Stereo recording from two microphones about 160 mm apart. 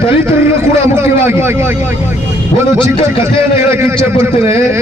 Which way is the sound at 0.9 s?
15° right (ahead or behind).